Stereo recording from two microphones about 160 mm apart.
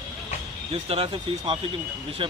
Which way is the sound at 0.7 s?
40° right (ahead or behind).